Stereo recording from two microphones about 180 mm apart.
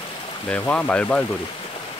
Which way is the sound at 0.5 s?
5° left (ahead or behind).